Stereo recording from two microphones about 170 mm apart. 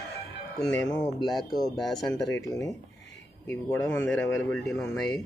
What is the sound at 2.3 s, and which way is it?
Speech, 20° left (ahead or behind).